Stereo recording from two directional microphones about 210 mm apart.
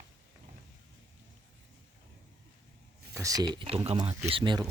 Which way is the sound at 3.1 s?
15° right (ahead or behind).